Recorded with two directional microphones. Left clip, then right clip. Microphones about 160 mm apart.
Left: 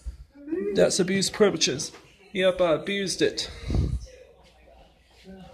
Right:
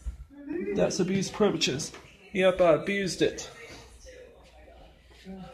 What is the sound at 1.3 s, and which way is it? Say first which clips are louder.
Speech: left 4 dB; 30° left (ahead or behind).